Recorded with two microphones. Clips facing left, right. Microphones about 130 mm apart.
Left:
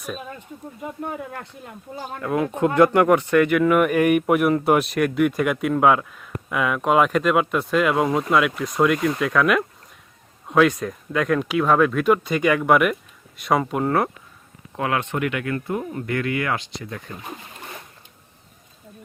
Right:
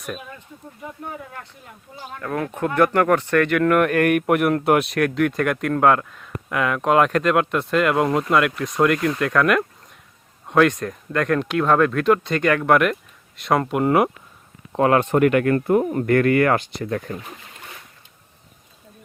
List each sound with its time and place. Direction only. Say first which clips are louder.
2.1 s speech: left 3 dB; 15° left (ahead or behind); by 14.1 s 10° right (ahead or behind)
14.7 s speech: right 7 dB; 40° right (ahead or behind)